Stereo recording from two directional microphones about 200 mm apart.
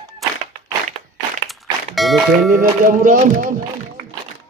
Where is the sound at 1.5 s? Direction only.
Centre (ahead or behind).